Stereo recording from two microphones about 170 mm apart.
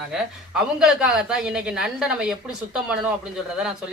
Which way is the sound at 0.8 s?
5° right (ahead or behind).